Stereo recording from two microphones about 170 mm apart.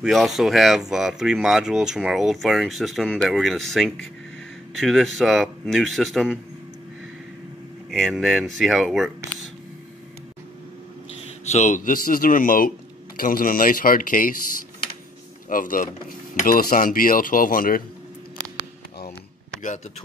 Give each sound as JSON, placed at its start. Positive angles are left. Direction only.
{"t": 0.0, "sound": "speech", "side_deg": 0}
{"t": 7.9, "sound": "speech", "side_deg": 0}
{"t": 11.4, "sound": "speech", "side_deg": 45}